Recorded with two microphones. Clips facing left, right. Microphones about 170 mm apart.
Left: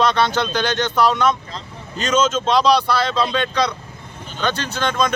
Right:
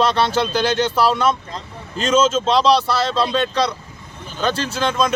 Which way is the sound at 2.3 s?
Centre (ahead or behind).